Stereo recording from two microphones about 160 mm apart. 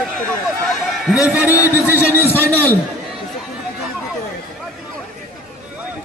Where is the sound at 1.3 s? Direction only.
10° right (ahead or behind).